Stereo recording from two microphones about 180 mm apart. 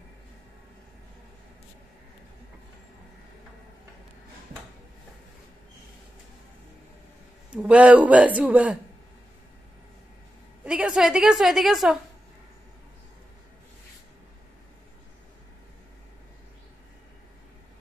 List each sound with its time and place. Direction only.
7.5 s a man's voice: 5° right (ahead or behind)
10.6 s a woman's voice: 5° right (ahead or behind)